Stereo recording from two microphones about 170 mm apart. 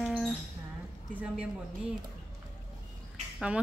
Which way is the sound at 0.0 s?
Centre (ahead or behind).